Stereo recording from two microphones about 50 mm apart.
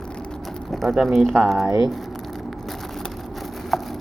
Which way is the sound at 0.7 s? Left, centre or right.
Centre.